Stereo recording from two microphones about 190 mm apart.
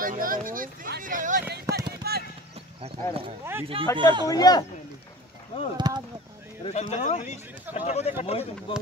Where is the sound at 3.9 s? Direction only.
25° right (ahead or behind).